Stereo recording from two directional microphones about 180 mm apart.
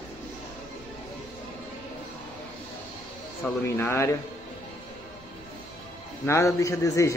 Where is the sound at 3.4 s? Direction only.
10° left (ahead or behind).